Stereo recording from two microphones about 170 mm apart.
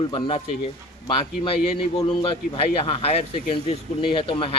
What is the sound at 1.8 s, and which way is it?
A man's voice, 30° left (ahead or behind).